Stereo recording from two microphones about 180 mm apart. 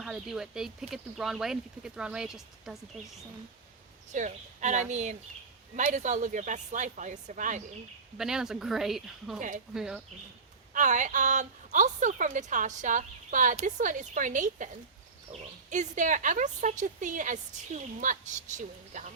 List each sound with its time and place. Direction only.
0.0 s speech: 5° right (ahead or behind)
4.1 s a woman's voice: 40° right (ahead or behind)
8.2 s speech: 5° right (ahead or behind)
10.8 s a woman's voice: 45° right (ahead or behind)